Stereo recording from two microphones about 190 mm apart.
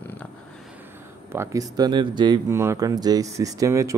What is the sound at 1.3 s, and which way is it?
Speech, 15° right (ahead or behind).